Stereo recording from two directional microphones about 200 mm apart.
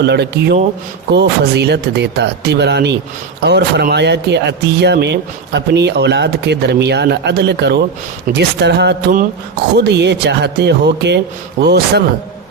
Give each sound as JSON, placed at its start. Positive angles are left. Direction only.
{"t": 0.0, "sound": "speech", "side_deg": -55}